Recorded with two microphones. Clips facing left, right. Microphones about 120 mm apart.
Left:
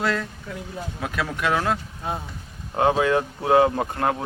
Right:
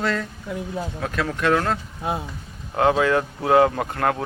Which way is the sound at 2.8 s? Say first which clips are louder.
Right 1 dB; 25° left (ahead or behind).